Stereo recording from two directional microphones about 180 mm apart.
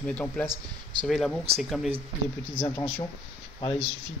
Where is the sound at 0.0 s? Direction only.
5° left (ahead or behind).